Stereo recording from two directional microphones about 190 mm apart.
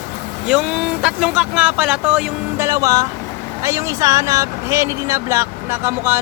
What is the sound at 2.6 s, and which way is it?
Speech, 15° right (ahead or behind).